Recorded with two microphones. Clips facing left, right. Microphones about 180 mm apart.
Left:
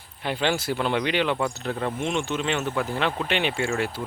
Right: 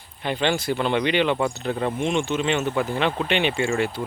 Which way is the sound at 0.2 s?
5° left (ahead or behind).